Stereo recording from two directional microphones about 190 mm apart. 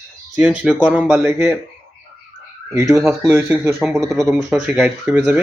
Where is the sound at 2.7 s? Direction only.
15° right (ahead or behind).